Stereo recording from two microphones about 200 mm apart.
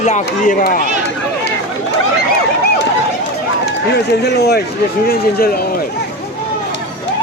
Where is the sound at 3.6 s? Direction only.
55° left (ahead or behind).